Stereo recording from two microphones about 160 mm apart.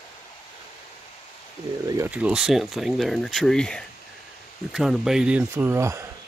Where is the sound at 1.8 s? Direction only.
20° right (ahead or behind).